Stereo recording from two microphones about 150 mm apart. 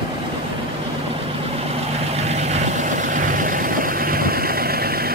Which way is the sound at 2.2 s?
45° right (ahead or behind).